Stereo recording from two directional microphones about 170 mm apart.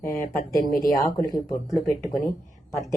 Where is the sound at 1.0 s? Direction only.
20° left (ahead or behind).